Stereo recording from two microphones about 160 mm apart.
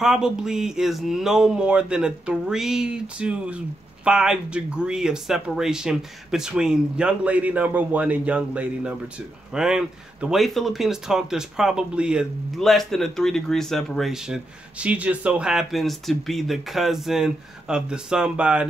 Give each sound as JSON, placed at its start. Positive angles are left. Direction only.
{"t": 0.0, "sound": "speech", "side_deg": -5}